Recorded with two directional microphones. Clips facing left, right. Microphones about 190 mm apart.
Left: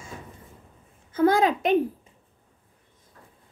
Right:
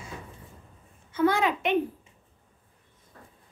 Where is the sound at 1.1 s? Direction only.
40° left (ahead or behind).